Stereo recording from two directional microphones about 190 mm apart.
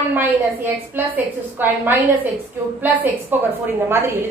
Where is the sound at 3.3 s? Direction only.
10° right (ahead or behind).